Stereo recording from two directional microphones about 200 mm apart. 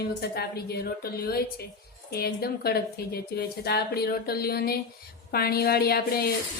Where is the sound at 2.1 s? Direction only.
50° left (ahead or behind).